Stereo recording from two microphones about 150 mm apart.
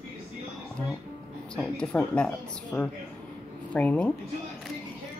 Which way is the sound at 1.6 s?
5° left (ahead or behind).